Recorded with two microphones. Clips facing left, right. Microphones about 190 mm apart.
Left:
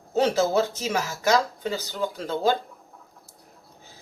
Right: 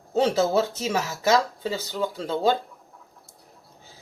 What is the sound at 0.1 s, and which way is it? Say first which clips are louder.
Speech: even; centre (ahead or behind).